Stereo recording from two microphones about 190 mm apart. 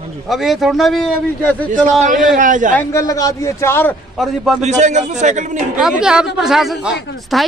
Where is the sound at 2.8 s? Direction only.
15° left (ahead or behind).